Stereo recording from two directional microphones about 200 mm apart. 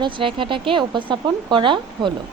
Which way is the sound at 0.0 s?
25° right (ahead or behind).